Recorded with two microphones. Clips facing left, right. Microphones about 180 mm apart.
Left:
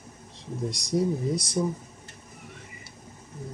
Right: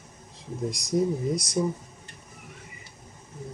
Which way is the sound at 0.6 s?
Centre (ahead or behind).